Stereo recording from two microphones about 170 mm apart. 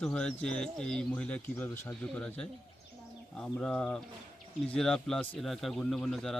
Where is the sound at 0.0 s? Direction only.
5° left (ahead or behind).